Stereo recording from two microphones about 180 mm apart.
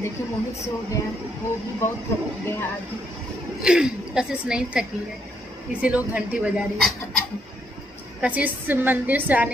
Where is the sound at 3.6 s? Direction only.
5° right (ahead or behind).